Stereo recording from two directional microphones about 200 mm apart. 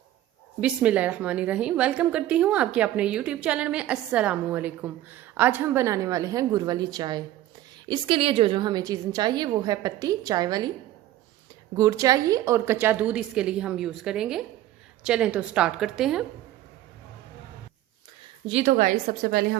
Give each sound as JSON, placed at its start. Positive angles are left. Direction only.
{"t": 0.6, "sound": "a woman's voice", "side_deg": -5}
{"t": 11.8, "sound": "a woman's voice", "side_deg": -15}
{"t": 18.4, "sound": "a woman's voice", "side_deg": -35}